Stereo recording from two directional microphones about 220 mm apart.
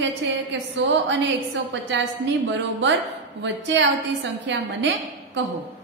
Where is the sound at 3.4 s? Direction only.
55° right (ahead or behind).